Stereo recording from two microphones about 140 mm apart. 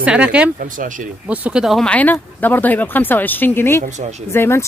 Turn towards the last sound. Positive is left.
turn(degrees=15)  # may be behind; listen again after turning